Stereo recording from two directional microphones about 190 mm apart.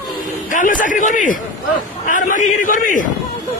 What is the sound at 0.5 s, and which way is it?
A man's voice, 45° left (ahead or behind).